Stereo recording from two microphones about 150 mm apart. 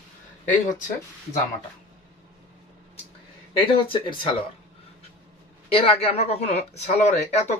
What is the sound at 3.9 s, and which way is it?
Speech, 35° left (ahead or behind).